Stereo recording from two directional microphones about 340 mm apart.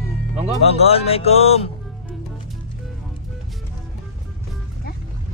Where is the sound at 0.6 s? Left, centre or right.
Centre.